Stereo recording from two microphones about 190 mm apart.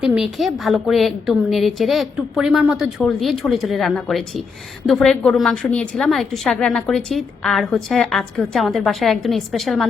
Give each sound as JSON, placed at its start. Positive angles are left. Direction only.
{"t": 0.0, "sound": "a woman's voice", "side_deg": 0}